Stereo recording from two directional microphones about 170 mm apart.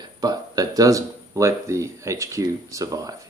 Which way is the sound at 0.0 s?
20° right (ahead or behind).